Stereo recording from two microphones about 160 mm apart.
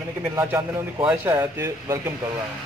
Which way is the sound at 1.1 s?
15° right (ahead or behind).